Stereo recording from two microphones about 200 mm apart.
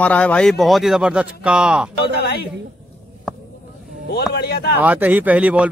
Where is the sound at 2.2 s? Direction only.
55° left (ahead or behind).